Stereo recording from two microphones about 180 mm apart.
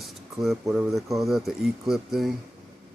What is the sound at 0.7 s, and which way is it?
Speech, centre (ahead or behind).